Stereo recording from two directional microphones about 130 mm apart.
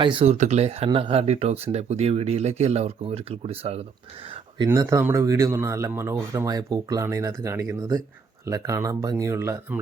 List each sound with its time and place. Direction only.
0.0 s speech: 40° right (ahead or behind)
0.3 s speech: 60° right (ahead or behind)
0.9 s speech: 45° right (ahead or behind)
4.7 s speech: 20° right (ahead or behind)